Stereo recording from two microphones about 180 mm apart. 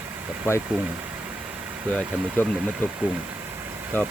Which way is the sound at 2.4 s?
10° left (ahead or behind).